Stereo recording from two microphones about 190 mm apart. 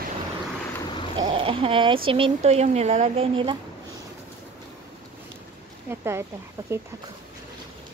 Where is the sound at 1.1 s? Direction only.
25° right (ahead or behind).